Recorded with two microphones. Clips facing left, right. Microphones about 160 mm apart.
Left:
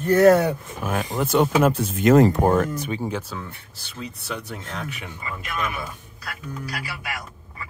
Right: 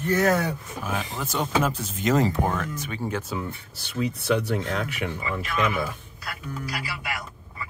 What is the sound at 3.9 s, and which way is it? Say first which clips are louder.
Speech: right 9 dB; 65° right (ahead or behind).